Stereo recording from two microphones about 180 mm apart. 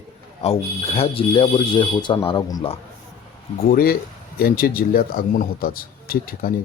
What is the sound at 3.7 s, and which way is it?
Speech, 55° left (ahead or behind).